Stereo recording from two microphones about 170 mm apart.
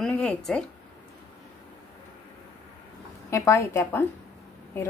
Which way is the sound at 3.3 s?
15° left (ahead or behind).